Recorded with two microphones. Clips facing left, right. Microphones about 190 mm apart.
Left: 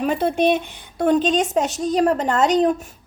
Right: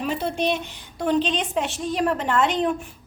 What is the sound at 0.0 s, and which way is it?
A woman's voice, 55° left (ahead or behind).